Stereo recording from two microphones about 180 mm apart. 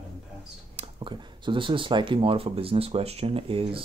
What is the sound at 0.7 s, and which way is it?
Speech, 25° right (ahead or behind).